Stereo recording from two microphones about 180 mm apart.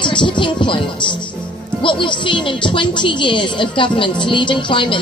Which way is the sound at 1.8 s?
30° left (ahead or behind).